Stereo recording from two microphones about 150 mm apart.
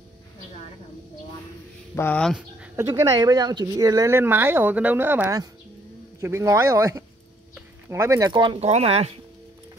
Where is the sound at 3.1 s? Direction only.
30° right (ahead or behind).